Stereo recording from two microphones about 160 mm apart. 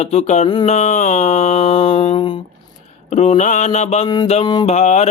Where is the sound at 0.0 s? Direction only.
45° left (ahead or behind).